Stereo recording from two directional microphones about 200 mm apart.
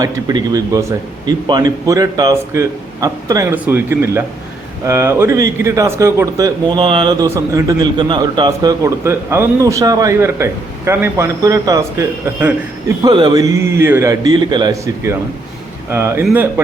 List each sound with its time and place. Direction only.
0.0 s a man's voice: 15° right (ahead or behind)